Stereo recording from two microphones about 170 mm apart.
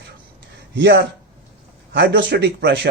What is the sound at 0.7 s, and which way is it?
Speech, 90° right.